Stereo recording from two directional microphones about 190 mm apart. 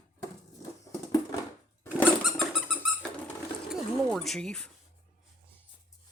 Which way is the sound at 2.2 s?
Centre (ahead or behind).